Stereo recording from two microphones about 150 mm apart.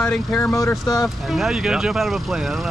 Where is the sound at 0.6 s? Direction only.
25° left (ahead or behind).